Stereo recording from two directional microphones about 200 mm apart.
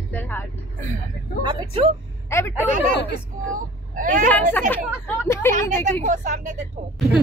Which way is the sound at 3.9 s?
40° right (ahead or behind).